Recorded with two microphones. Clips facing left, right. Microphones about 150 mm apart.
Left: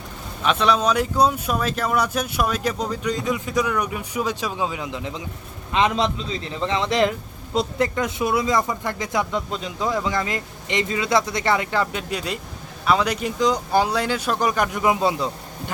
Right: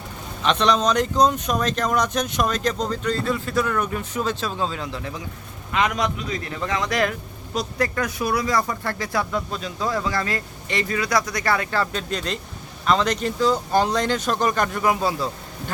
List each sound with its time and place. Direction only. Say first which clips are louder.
0.4 s a man's voice: even; 5° left (ahead or behind)